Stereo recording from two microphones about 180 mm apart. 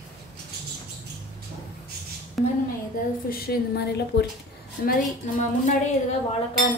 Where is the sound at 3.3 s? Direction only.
60° left (ahead or behind).